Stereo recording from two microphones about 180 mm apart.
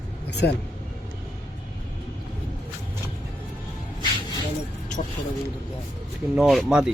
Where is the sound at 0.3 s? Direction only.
70° left (ahead or behind).